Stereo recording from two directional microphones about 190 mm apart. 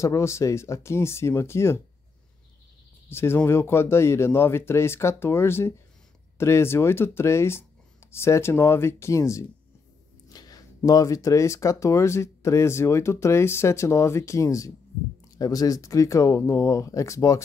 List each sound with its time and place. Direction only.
0.0 s speech: 15° left (ahead or behind)
3.1 s speech: 10° left (ahead or behind)